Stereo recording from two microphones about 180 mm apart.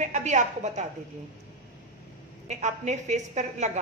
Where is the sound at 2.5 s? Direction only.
40° right (ahead or behind).